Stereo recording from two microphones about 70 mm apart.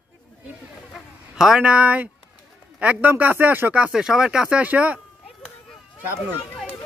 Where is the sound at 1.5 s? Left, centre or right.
Centre.